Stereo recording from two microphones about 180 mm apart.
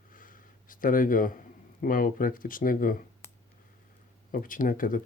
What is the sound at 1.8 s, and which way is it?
Speech, 50° left (ahead or behind).